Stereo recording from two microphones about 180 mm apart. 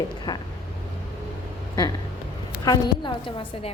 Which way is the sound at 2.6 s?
25° left (ahead or behind).